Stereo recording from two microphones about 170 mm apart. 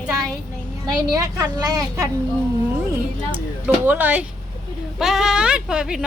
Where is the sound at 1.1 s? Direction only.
20° right (ahead or behind).